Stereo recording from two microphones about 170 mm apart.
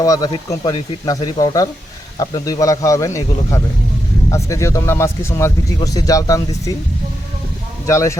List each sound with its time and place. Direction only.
0.0 s speech: 20° left (ahead or behind)
7.9 s speech: 15° left (ahead or behind)